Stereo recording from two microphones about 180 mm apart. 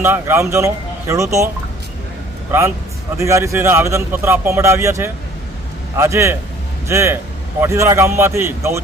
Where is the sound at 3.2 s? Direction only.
15° right (ahead or behind).